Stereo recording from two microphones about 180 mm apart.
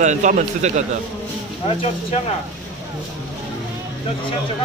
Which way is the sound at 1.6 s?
35° left (ahead or behind).